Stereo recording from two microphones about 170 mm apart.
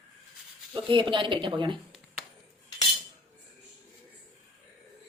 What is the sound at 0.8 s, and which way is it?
Speech, 30° right (ahead or behind).